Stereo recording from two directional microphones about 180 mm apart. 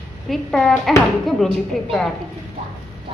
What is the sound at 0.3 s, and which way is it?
A woman's voice, centre (ahead or behind).